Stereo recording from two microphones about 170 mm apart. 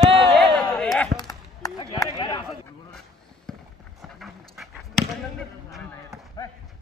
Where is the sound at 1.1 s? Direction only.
25° left (ahead or behind).